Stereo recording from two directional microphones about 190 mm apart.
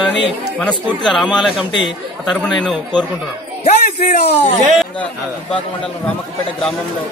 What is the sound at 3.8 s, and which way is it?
Speech, 40° left (ahead or behind).